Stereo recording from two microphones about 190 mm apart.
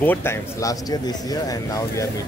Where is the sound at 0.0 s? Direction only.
10° left (ahead or behind).